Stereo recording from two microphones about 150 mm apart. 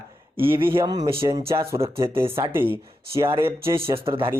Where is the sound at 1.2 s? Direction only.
20° right (ahead or behind).